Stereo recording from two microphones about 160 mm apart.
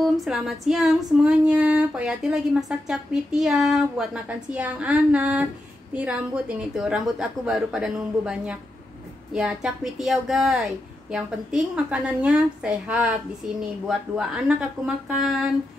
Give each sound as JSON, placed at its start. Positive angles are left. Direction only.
{"t": 0.0, "sound": "female singing", "side_deg": 0}